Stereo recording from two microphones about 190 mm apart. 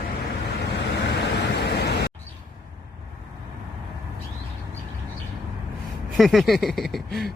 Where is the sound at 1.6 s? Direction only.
60° left (ahead or behind).